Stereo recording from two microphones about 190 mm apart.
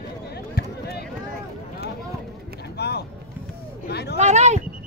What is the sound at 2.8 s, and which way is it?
Vehicle, 60° left (ahead or behind).